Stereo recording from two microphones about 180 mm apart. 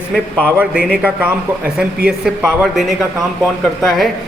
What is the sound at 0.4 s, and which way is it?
A man's voice, 10° right (ahead or behind).